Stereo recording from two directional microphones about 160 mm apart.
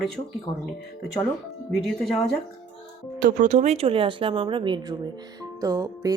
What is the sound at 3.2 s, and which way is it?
Speech, 55° right (ahead or behind).